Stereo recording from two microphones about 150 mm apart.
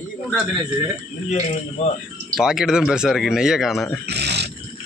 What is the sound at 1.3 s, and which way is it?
Speech, 50° left (ahead or behind).